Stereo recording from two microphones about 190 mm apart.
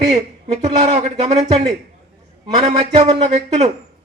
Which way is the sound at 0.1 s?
35° right (ahead or behind).